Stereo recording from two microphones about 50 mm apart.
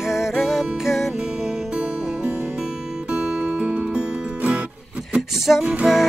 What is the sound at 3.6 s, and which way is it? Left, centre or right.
Music, centre.